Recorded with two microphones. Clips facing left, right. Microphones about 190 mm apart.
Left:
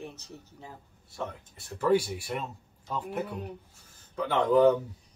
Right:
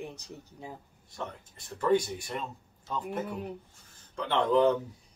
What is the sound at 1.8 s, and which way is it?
Speech, 5° left (ahead or behind).